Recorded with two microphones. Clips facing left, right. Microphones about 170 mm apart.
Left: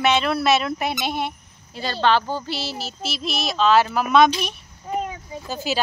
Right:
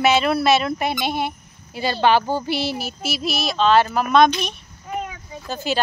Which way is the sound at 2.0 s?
10° right (ahead or behind).